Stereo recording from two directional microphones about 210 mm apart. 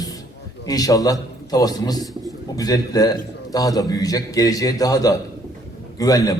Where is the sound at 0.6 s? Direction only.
15° left (ahead or behind).